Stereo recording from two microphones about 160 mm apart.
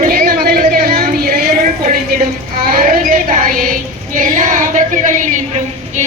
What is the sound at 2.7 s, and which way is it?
Child singing, 55° right (ahead or behind).